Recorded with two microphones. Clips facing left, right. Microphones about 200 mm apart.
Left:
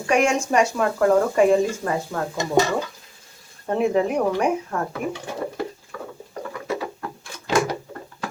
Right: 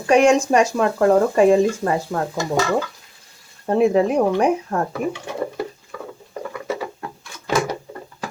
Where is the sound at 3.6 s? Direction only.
35° right (ahead or behind).